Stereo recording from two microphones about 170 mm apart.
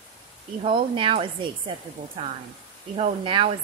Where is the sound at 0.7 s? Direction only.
30° right (ahead or behind).